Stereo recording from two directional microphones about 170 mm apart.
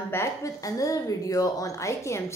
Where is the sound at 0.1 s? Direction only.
20° left (ahead or behind).